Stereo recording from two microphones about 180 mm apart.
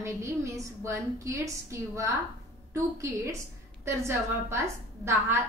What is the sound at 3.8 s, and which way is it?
A woman's voice, 15° right (ahead or behind).